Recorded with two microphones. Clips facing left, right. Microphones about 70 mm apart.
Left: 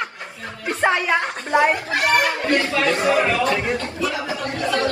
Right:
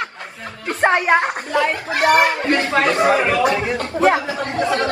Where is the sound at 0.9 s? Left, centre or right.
Right.